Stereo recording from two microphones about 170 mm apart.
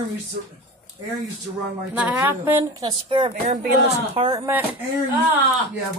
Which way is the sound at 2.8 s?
30° right (ahead or behind).